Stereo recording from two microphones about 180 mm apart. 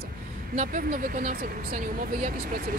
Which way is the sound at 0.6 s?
50° right (ahead or behind).